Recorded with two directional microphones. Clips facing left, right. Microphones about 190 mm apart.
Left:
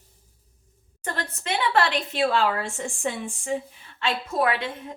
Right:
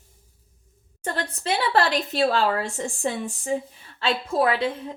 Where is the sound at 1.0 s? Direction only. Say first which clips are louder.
Right 3 dB; 35° right (ahead or behind).